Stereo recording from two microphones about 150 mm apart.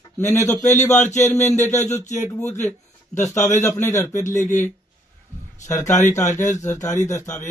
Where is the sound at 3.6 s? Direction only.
15° left (ahead or behind).